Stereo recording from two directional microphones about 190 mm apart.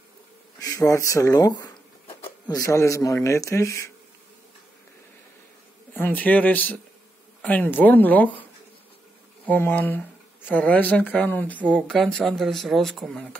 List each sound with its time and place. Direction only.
0.6 s speech: 15° left (ahead or behind)
5.9 s speech: 10° left (ahead or behind)
9.5 s speech: 10° left (ahead or behind)